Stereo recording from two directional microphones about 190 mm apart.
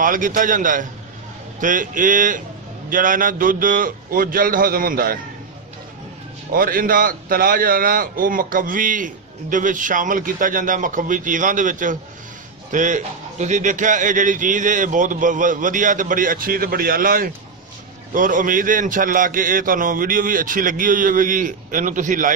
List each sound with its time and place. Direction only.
0.0 s a man's voice: 45° right (ahead or behind)
6.5 s a man's voice: 50° right (ahead or behind)